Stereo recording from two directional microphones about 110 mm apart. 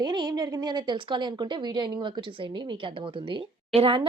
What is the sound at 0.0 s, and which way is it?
A woman's voice, 40° right (ahead or behind).